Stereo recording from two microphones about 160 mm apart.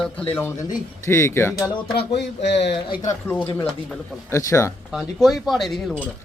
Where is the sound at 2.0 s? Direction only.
90° left.